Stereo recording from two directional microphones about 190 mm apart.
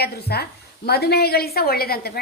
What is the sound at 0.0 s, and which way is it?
A woman's voice, 55° left (ahead or behind).